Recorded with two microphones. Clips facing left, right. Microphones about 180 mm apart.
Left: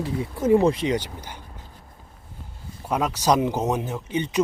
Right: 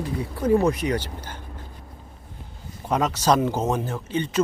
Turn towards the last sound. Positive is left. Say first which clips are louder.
# even
turn(degrees=15)  # may be behind; listen again after turning